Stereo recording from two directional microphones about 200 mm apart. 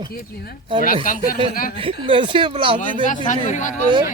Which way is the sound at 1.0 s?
45° left (ahead or behind).